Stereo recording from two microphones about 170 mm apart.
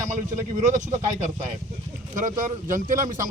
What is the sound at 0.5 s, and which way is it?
Speech, 45° right (ahead or behind).